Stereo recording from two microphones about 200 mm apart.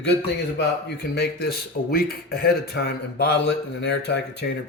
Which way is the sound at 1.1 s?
55° left (ahead or behind).